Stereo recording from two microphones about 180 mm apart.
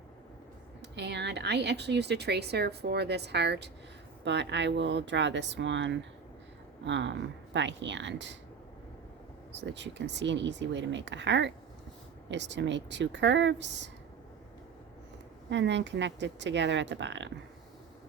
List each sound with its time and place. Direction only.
0.8 s speech: 70° right (ahead or behind)
9.5 s speech: 75° right (ahead or behind)
15.4 s speech: 75° right (ahead or behind)